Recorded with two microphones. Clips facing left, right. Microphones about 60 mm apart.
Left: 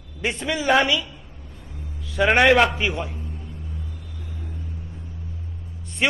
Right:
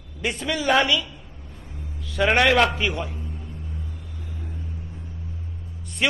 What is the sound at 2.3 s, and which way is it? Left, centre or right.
Speech, left.